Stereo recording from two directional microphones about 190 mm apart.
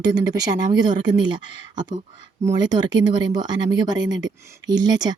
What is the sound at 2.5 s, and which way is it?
Speech, 20° right (ahead or behind).